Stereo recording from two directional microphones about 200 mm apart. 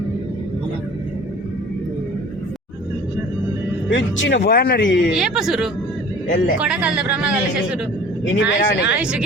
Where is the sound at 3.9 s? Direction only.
60° left (ahead or behind).